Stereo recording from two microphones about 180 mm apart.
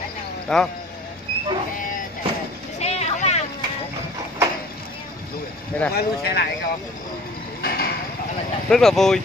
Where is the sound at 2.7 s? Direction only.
35° left (ahead or behind).